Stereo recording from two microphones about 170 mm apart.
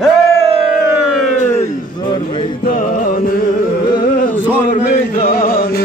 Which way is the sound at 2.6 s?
55° left (ahead or behind).